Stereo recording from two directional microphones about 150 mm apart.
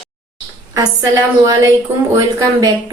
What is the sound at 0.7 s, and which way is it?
A woman's voice, 25° right (ahead or behind).